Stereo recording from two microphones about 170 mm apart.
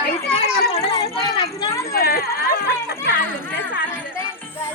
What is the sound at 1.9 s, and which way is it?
Speech, 65° left (ahead or behind).